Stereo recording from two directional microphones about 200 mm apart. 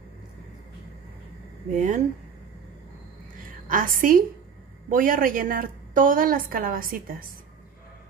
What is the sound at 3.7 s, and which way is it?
A woman's voice, 45° right (ahead or behind).